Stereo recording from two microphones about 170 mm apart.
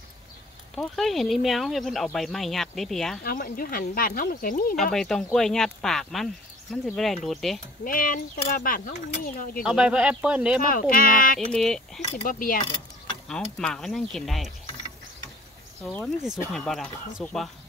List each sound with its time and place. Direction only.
0.7 s speech: centre (ahead or behind)
3.3 s speech: 55° left (ahead or behind)
4.9 s speech: centre (ahead or behind)
7.8 s speech: 55° left (ahead or behind)
9.6 s speech: 5° right (ahead or behind)
10.7 s speech: 55° left (ahead or behind)
11.3 s speech: 5° left (ahead or behind)
12.0 s speech: 40° left (ahead or behind)
12.4 s mechanisms: 55° left (ahead or behind)
13.3 s speech: 5° left (ahead or behind)
15.8 s speech: 5° left (ahead or behind)